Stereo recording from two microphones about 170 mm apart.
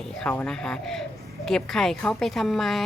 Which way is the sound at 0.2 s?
5° left (ahead or behind).